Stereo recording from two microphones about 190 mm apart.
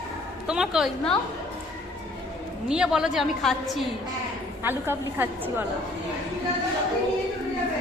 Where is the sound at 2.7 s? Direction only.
5° right (ahead or behind).